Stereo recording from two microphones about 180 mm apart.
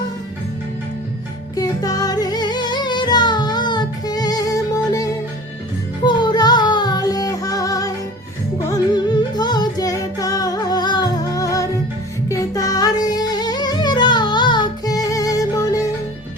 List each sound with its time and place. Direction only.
1.5 s music: 20° left (ahead or behind)
6.1 s music: 25° left (ahead or behind)